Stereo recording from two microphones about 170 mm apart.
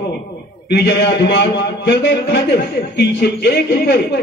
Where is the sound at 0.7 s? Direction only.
75° left (ahead or behind).